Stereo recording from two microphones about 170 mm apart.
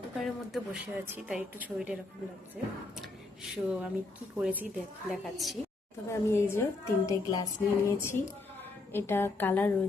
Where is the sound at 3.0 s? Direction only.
Centre (ahead or behind).